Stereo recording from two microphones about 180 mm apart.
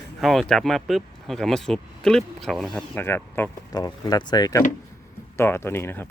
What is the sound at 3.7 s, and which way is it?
Speech, 20° left (ahead or behind).